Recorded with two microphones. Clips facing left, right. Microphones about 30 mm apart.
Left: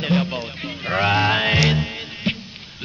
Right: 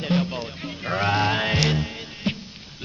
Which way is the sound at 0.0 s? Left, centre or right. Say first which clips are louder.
Left 3 dB; left.